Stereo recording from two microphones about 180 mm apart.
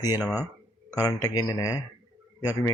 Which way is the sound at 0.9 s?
20° left (ahead or behind).